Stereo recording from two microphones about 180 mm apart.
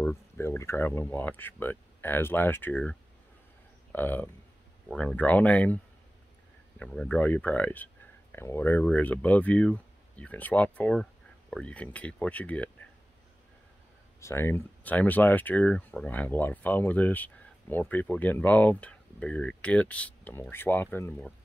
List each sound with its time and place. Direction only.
0.0 s speech: 15° left (ahead or behind)
6.8 s speech: 5° left (ahead or behind)
14.2 s speech: 15° left (ahead or behind)